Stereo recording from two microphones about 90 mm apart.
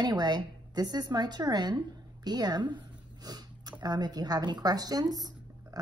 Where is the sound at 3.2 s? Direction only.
45° right (ahead or behind).